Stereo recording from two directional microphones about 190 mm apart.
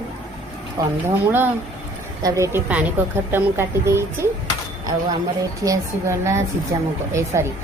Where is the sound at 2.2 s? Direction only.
15° right (ahead or behind).